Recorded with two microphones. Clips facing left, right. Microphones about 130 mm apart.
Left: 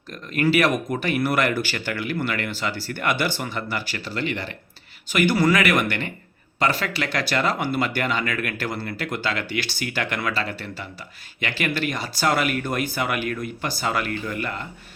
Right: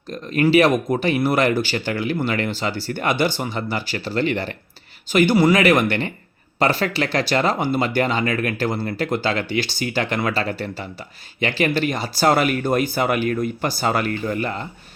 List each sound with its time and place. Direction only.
0.1 s speech: 30° right (ahead or behind)
5.1 s speech: 25° right (ahead or behind)